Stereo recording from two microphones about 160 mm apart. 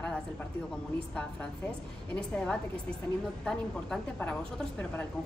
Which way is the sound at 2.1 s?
5° left (ahead or behind).